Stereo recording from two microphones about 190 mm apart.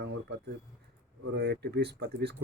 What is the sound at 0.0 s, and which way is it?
Speech, 65° right (ahead or behind).